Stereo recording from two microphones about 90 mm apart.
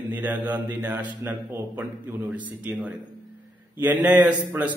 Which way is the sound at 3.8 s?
15° right (ahead or behind).